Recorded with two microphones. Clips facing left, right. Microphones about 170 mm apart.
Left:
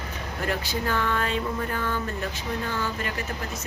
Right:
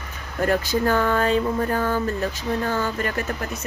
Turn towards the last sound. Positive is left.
turn(degrees=-45)  # may be behind; listen again after turning